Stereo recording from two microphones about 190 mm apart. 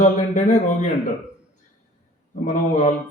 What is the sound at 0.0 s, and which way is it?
Speech, 40° left (ahead or behind).